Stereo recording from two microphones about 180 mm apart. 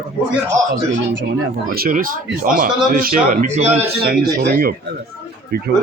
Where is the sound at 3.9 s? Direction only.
60° right (ahead or behind).